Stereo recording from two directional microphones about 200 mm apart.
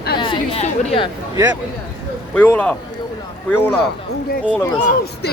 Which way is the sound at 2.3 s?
10° left (ahead or behind).